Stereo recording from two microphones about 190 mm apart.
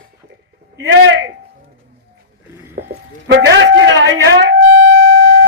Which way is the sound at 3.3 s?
70° right (ahead or behind).